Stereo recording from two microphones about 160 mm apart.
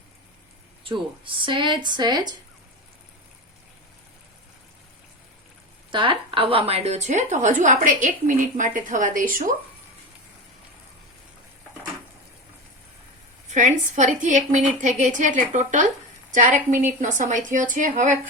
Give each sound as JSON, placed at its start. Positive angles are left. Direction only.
{"t": 0.9, "sound": "speech", "side_deg": -30}
{"t": 5.9, "sound": "a woman's voice", "side_deg": -30}
{"t": 13.5, "sound": "a woman's voice", "side_deg": -50}